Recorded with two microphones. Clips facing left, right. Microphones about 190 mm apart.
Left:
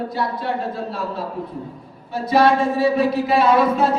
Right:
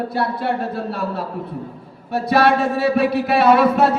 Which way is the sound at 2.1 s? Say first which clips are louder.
Even; 65° right (ahead or behind).